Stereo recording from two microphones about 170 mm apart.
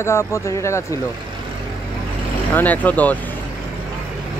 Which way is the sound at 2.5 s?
10° left (ahead or behind).